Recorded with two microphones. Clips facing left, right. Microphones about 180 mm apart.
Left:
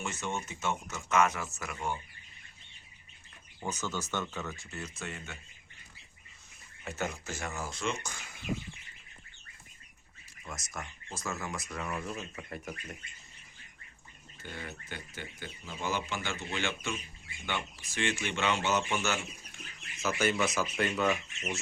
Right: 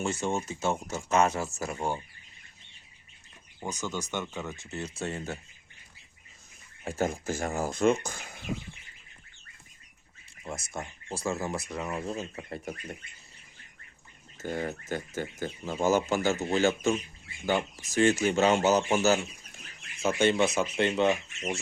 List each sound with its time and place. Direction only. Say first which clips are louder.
0.0 s speech: right 7 dB; 30° right (ahead or behind)
3.6 s speech: right 2 dB; 15° right (ahead or behind); by 5.4 s 35° right (ahead or behind)
7.0 s speech: right 7 dB; 45° right (ahead or behind)
10.4 s speech: right 6 dB; 30° right (ahead or behind)
14.3 s speech: right 11 dB; 45° right (ahead or behind); by 21.6 s 30° right (ahead or behind)